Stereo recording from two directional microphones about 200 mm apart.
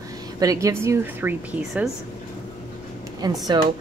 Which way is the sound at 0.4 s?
15° right (ahead or behind).